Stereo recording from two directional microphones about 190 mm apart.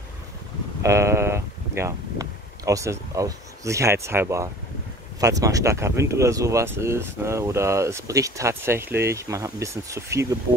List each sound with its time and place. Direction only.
0.8 s speech: 15° right (ahead or behind)